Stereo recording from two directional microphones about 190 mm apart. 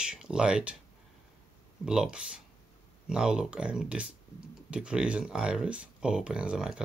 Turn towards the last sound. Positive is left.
turn(degrees=-5)  # may be behind; listen again after turning